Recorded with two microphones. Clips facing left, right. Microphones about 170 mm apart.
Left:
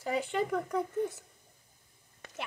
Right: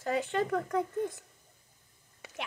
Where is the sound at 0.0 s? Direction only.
10° left (ahead or behind).